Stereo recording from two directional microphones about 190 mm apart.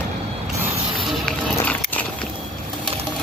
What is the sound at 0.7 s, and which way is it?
Mechanisms, 25° right (ahead or behind).